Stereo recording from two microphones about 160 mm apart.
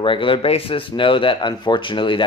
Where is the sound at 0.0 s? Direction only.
30° left (ahead or behind).